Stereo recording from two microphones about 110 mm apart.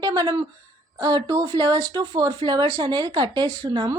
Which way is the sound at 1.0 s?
35° right (ahead or behind).